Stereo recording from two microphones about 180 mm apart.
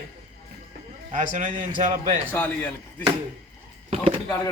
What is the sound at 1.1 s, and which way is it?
A man's voice, 45° right (ahead or behind).